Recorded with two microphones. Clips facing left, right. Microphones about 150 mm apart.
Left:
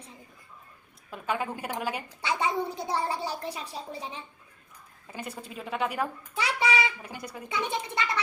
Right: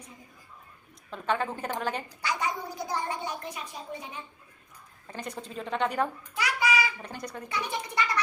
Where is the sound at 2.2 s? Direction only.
25° left (ahead or behind).